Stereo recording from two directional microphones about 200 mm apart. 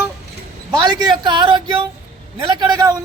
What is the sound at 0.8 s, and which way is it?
A man's voice, 20° right (ahead or behind).